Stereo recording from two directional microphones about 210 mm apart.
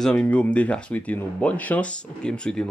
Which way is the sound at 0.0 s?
5° left (ahead or behind).